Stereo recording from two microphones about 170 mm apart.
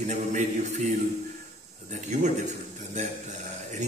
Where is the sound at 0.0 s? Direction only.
45° right (ahead or behind).